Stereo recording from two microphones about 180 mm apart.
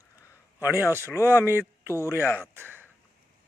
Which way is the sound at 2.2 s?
10° left (ahead or behind).